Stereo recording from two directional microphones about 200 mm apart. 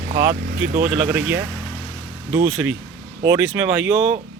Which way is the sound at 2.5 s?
Centre (ahead or behind).